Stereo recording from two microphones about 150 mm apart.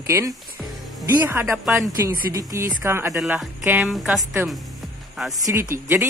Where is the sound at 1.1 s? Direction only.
15° right (ahead or behind).